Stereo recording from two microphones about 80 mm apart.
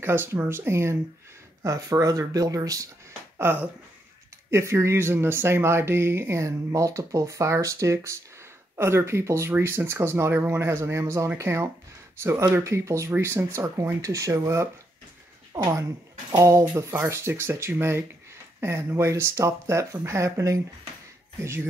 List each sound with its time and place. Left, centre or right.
0.0 s speech: right
3.3 s speech: right
15.7 s speech: right